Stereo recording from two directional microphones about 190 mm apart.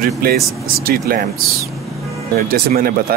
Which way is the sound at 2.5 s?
50° right (ahead or behind).